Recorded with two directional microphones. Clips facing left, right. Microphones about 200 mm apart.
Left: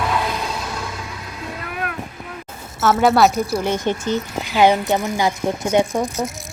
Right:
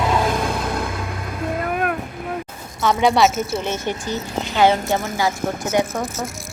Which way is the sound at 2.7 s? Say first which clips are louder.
Left 2 dB; 5° left (ahead or behind).